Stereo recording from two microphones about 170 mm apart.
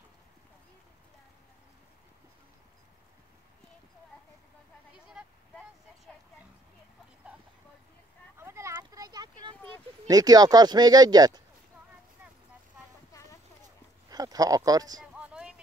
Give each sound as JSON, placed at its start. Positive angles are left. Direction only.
{"t": 8.4, "sound": "a sound", "side_deg": -15}
{"t": 10.0, "sound": "speech", "side_deg": -20}
{"t": 14.0, "sound": "speech", "side_deg": -20}
{"t": 15.1, "sound": "vehicle", "side_deg": -5}